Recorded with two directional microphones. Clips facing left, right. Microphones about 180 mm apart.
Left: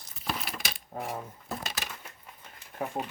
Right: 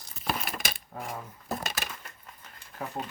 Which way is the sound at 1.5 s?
50° right (ahead or behind).